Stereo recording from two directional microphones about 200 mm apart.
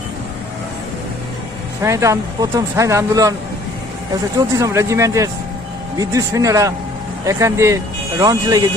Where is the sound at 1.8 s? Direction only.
15° right (ahead or behind).